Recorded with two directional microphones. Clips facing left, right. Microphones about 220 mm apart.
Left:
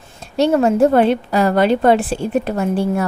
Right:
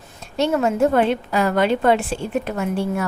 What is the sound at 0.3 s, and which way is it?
A woman's voice, 35° left (ahead or behind).